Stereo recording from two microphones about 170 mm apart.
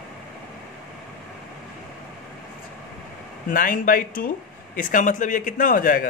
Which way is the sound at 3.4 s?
55° left (ahead or behind).